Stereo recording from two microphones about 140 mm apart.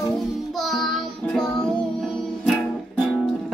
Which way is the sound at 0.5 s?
Centre (ahead or behind).